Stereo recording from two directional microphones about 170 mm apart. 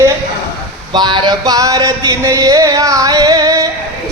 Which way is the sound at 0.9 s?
25° right (ahead or behind).